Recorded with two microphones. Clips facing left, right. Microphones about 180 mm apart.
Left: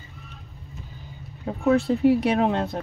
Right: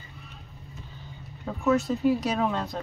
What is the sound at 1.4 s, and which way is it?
Speech, 30° left (ahead or behind).